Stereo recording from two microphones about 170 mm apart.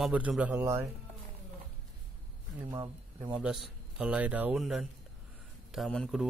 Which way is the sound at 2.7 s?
25° right (ahead or behind).